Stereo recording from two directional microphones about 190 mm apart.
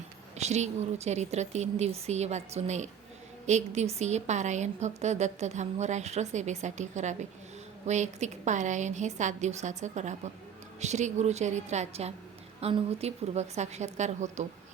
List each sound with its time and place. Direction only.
0.3 s a woman's voice: 35° right (ahead or behind)